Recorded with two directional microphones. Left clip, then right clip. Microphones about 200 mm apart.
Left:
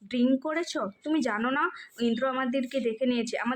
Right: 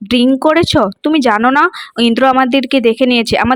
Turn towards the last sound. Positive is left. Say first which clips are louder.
# right 17 dB
turn(degrees=-50)  # may be behind; listen again after turning